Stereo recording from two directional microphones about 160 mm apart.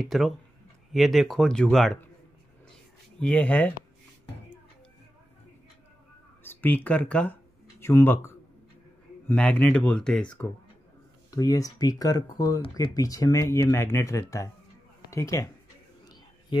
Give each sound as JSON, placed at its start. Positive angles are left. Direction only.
{"t": 0.0, "sound": "speech", "side_deg": 0}
{"t": 3.2, "sound": "speech", "side_deg": 10}
{"t": 6.4, "sound": "speech", "side_deg": 15}
{"t": 9.3, "sound": "speech", "side_deg": 10}
{"t": 11.2, "sound": "speech", "side_deg": 20}